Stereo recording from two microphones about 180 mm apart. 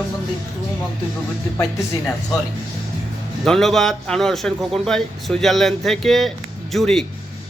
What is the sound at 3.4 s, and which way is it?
A man's voice, centre (ahead or behind).